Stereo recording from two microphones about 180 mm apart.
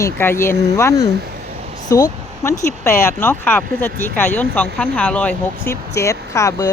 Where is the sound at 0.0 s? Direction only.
15° left (ahead or behind).